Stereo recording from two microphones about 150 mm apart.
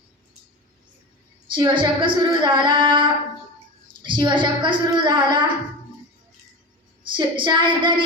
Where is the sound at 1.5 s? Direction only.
35° right (ahead or behind).